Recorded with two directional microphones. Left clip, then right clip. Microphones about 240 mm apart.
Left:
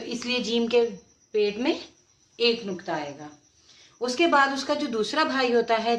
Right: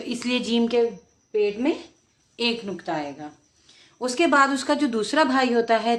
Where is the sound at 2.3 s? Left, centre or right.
Right.